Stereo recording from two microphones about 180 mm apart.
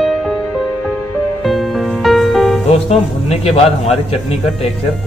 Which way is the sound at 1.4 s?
Centre (ahead or behind).